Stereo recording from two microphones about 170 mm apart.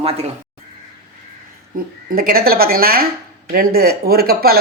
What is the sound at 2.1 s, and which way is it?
Speech, 60° right (ahead or behind).